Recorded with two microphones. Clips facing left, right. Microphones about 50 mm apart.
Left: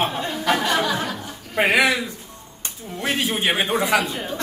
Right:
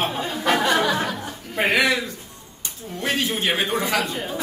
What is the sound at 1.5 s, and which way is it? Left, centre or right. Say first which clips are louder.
Speech: left 2 dB; centre.